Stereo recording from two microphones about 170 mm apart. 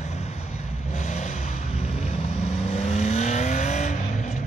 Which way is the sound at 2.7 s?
40° left (ahead or behind).